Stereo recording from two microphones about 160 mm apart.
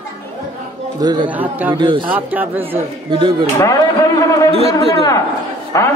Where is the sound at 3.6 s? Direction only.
20° left (ahead or behind).